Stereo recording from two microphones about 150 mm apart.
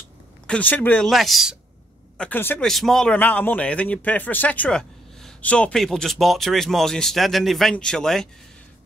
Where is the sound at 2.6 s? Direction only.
Centre (ahead or behind).